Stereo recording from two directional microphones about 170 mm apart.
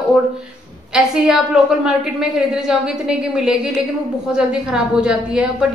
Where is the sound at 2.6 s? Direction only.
5° right (ahead or behind).